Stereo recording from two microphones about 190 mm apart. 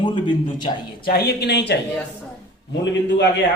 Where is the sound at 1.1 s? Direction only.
55° left (ahead or behind).